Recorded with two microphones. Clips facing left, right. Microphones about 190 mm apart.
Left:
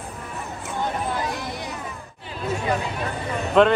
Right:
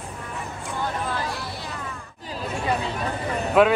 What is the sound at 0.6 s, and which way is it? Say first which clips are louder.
Hubbub: left 2 dB; 20° left (ahead or behind).